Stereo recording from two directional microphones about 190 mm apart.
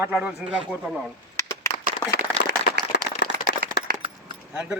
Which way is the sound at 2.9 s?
65° left (ahead or behind).